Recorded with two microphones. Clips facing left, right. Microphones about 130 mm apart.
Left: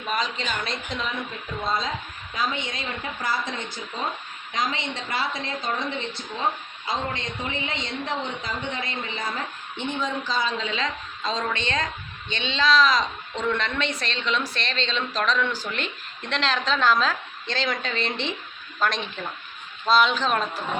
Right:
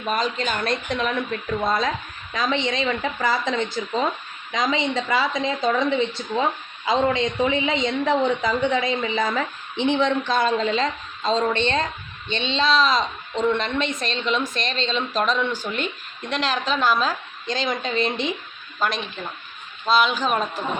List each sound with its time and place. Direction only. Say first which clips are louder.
0.1 s speech: right 4 dB; 45° right (ahead or behind); by 1.9 s 70° right (ahead or behind)
2.3 s a woman's voice: right 5 dB; 90° right; by 20.5 s 10° right (ahead or behind)